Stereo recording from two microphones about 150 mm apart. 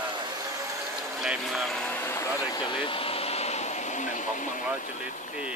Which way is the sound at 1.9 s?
15° left (ahead or behind).